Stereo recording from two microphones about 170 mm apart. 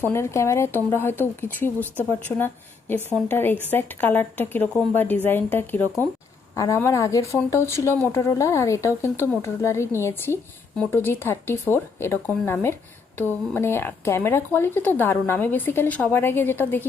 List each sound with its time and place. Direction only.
0.0 s speech: 15° left (ahead or behind)